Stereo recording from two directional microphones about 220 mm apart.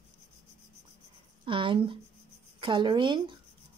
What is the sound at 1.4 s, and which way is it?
Speech, 20° right (ahead or behind).